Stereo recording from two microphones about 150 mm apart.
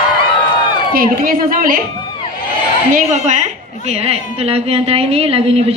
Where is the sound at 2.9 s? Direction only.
55° right (ahead or behind).